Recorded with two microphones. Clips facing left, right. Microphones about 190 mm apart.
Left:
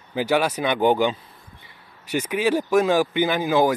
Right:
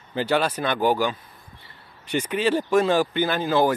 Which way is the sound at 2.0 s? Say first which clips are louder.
Left 1 dB; 10° left (ahead or behind).